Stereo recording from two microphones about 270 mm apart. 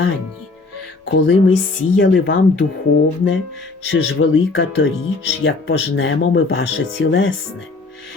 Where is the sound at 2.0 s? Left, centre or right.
Left.